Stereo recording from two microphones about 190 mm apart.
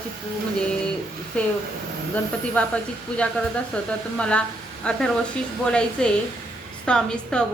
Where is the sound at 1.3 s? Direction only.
5° left (ahead or behind).